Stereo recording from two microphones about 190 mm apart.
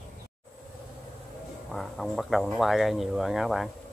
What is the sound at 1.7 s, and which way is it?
Speech, centre (ahead or behind).